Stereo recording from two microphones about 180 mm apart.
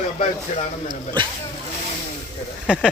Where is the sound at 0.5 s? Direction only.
40° left (ahead or behind).